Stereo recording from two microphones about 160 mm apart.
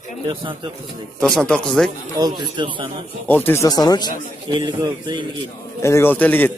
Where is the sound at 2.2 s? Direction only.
25° right (ahead or behind).